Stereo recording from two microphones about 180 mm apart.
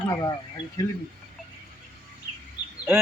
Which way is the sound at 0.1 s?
20° left (ahead or behind).